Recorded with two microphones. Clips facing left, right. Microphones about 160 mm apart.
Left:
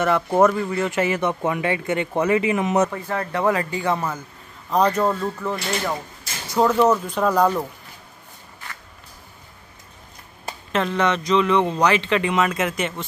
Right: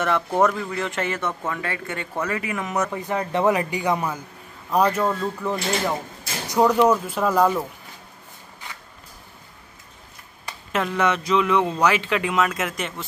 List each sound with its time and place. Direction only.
0.4 s speech: centre (ahead or behind); by 2.9 s 20° left (ahead or behind)
2.9 s speech: 20° right (ahead or behind)
10.7 s speech: 10° right (ahead or behind)